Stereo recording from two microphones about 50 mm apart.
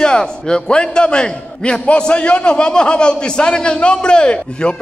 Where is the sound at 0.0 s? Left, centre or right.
Centre.